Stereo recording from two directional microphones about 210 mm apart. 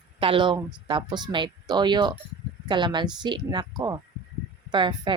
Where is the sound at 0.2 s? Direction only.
25° right (ahead or behind).